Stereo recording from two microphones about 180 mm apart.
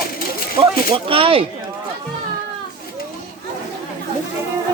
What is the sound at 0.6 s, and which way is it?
Speech, 30° right (ahead or behind).